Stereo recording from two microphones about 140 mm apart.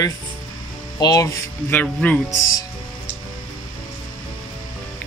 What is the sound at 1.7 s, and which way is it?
Speech, 10° left (ahead or behind).